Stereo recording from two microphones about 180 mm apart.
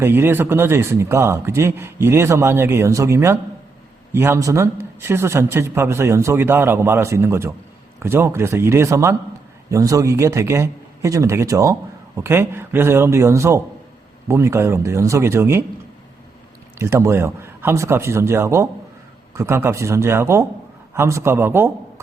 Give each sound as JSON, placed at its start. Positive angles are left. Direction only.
{"t": 0.0, "sound": "a man's voice", "side_deg": -15}
{"t": 16.7, "sound": "a man's voice", "side_deg": -15}